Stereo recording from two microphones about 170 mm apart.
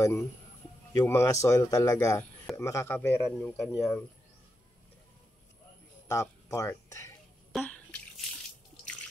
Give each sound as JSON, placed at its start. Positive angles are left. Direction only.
{"t": 0.0, "sound": "speech", "side_deg": 15}
{"t": 3.7, "sound": "speech", "side_deg": 0}
{"t": 6.0, "sound": "speech", "side_deg": 20}
{"t": 7.5, "sound": "drip", "side_deg": 10}